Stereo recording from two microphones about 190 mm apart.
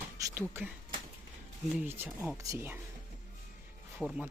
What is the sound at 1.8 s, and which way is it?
Speech, 10° right (ahead or behind).